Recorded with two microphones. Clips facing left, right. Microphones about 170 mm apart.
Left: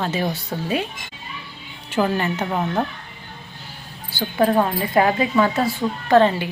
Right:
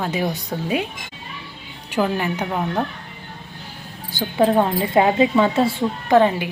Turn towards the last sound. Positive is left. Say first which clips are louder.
# even
turn(degrees=-15)  # may be behind; listen again after turning